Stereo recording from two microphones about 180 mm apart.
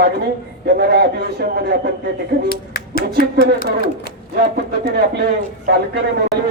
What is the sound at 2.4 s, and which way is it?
Speech, 55° left (ahead or behind).